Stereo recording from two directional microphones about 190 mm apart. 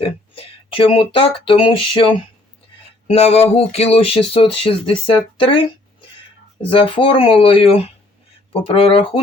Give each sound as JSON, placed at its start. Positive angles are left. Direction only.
{"t": 0.0, "sound": "speech", "side_deg": 30}